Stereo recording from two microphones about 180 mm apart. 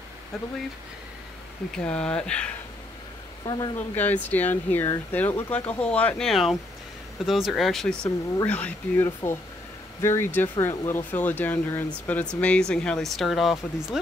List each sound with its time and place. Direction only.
1.8 s speech: 5° left (ahead or behind)
3.4 s speech: 25° left (ahead or behind)
3.9 s speech: 10° left (ahead or behind)